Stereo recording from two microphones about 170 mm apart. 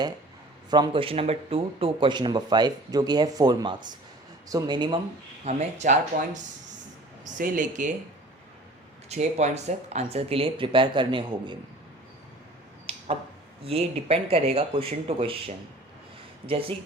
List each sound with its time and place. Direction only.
0.7 s speech: 30° right (ahead or behind)
5.5 s speech: 40° right (ahead or behind)
9.0 s speech: 40° right (ahead or behind)
13.7 s speech: 35° right (ahead or behind)